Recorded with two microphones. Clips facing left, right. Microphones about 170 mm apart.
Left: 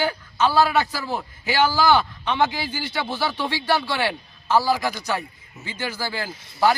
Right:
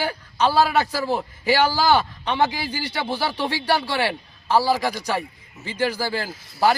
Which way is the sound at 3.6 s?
5° right (ahead or behind).